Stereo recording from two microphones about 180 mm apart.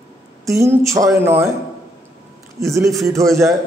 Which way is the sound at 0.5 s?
15° right (ahead or behind).